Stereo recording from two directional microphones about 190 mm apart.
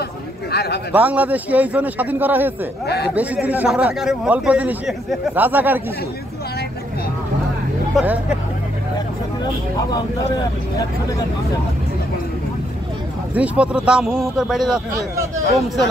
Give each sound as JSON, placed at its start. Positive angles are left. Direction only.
{"t": 0.5, "sound": "speech", "side_deg": 55}
{"t": 0.9, "sound": "a man's voice", "side_deg": -10}
{"t": 7.9, "sound": "a man's voice", "side_deg": -5}
{"t": 13.3, "sound": "a man's voice", "side_deg": -5}
{"t": 15.0, "sound": "a man's voice", "side_deg": -15}